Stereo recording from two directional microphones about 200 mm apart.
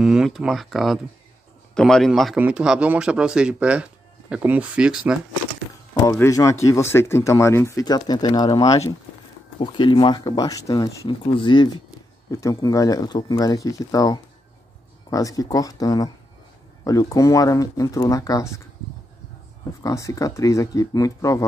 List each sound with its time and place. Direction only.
0.0 s a man's voice: 5° right (ahead or behind)
6.0 s speech: 15° left (ahead or behind)
19.8 s speech: 15° left (ahead or behind)